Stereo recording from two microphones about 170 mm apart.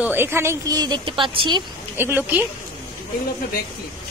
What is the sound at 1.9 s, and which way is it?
Speech, 10° right (ahead or behind).